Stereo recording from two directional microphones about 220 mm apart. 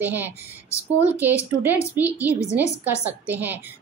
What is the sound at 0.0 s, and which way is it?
Speech, 10° right (ahead or behind).